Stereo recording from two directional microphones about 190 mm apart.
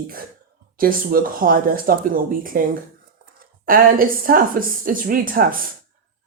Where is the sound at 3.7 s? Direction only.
50° right (ahead or behind).